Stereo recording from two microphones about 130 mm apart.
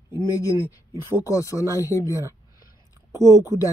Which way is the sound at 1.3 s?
25° left (ahead or behind).